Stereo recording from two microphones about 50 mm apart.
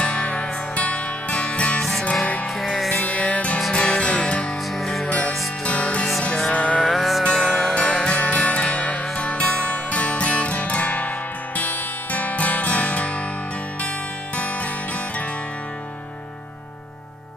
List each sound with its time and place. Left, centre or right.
0.0 s music: left
1.8 s music: centre
3.1 s music: centre
4.7 s music: centre
5.7 s music: left
6.8 s music: centre
7.7 s music: centre
14.3 s music: left